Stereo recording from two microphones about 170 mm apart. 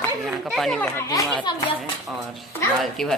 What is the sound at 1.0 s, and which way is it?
Speech, 20° left (ahead or behind).